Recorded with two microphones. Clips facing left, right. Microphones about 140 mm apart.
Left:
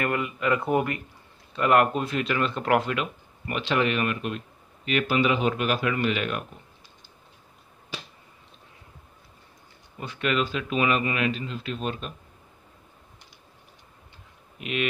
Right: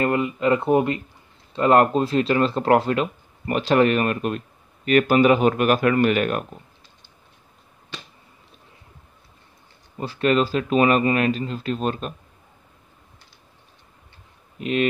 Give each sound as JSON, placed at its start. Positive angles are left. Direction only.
{"t": 0.0, "sound": "speech", "side_deg": -25}
{"t": 9.9, "sound": "speech", "side_deg": -35}
{"t": 14.6, "sound": "speech", "side_deg": -35}